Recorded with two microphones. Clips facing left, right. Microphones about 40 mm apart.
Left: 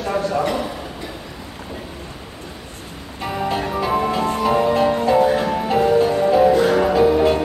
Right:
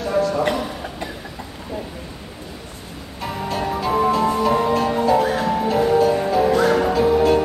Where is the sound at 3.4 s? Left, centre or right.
Centre.